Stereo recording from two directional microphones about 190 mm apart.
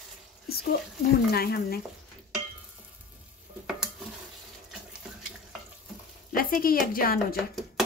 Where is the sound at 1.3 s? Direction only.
55° left (ahead or behind).